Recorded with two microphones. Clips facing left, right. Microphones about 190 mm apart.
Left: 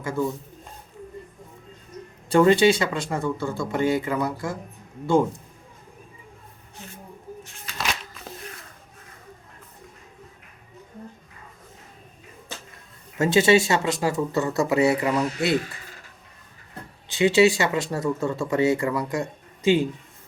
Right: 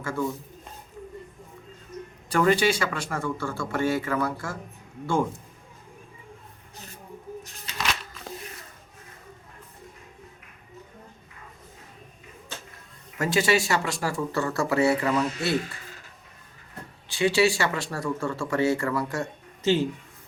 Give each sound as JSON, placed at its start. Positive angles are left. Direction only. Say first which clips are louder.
{"t": 0.0, "sound": "a man's voice", "louder": "left 3 dB", "side_deg": 20}
{"t": 2.3, "sound": "speech", "louder": "left 5 dB", "side_deg": 25}
{"t": 7.4, "sound": "shuffling cards", "louder": "even", "side_deg": -40}
{"t": 13.1, "sound": "speech", "louder": "left 5 dB", "side_deg": 25}
{"t": 17.1, "sound": "speech", "louder": "left 4 dB", "side_deg": 20}